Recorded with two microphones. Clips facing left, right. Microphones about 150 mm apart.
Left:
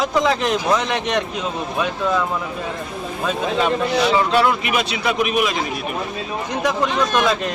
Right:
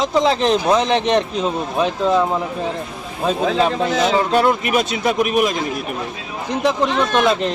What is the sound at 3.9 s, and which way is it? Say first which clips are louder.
A man's voice: right 1 dB; 45° right (ahead or behind).